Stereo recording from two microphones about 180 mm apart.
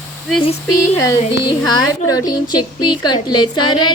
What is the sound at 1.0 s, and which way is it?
A woman's voice, 25° left (ahead or behind).